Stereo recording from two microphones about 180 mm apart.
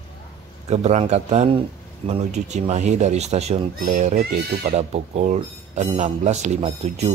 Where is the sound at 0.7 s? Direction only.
40° right (ahead or behind).